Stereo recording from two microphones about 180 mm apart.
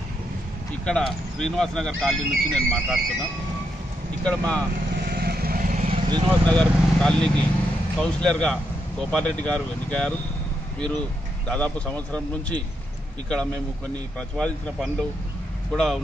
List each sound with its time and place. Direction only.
0.8 s speech: 5° left (ahead or behind)
4.2 s speech: 5° left (ahead or behind)
5.1 s vehicle: 60° right (ahead or behind)
5.8 s vehicle: 35° right (ahead or behind)
6.4 s speech: 5° left (ahead or behind)